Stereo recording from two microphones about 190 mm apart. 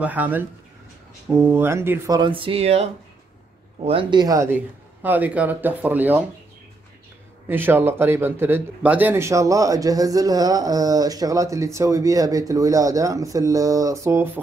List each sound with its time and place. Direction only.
0.0 s speech: 10° right (ahead or behind)
7.4 s speech: 10° right (ahead or behind)